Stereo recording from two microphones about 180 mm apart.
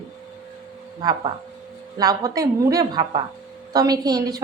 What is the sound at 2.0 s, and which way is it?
Speech, 20° right (ahead or behind).